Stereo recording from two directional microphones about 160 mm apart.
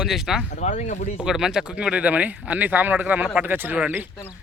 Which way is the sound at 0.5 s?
50° left (ahead or behind).